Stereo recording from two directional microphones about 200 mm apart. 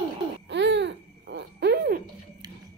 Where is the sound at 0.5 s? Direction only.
60° right (ahead or behind).